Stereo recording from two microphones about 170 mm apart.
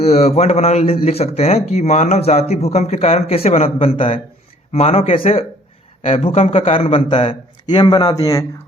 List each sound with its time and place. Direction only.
0.0 s speech: 35° left (ahead or behind); by 8.4 s 20° left (ahead or behind)